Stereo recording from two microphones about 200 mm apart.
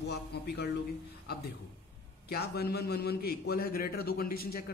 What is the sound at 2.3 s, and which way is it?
A man's voice, 55° left (ahead or behind).